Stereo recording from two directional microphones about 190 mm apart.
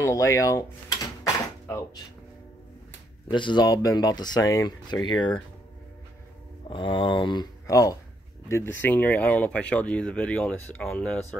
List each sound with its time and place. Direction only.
0.0 s door: 15° left (ahead or behind)
3.3 s speech: 25° left (ahead or behind)
6.7 s speech: 25° left (ahead or behind); by 11.1 s 5° left (ahead or behind)